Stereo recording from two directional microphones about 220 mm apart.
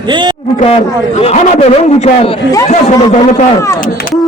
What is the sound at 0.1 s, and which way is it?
Speech, 20° right (ahead or behind).